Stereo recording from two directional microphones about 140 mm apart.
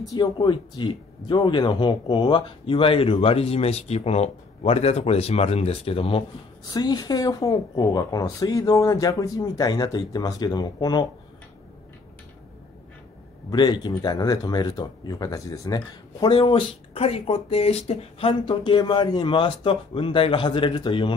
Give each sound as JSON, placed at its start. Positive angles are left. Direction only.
{"t": 0.1, "sound": "speech", "side_deg": 30}
{"t": 6.7, "sound": "speech", "side_deg": 30}
{"t": 13.5, "sound": "speech", "side_deg": 30}